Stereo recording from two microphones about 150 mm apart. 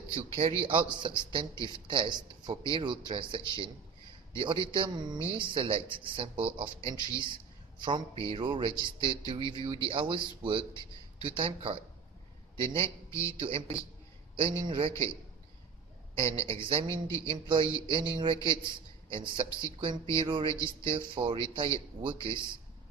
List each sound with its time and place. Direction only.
0.1 s a man's voice: 40° right (ahead or behind)
13.1 s speech: 20° left (ahead or behind)
13.4 s a man's voice: 40° right (ahead or behind)
16.1 s a man's voice: 40° right (ahead or behind)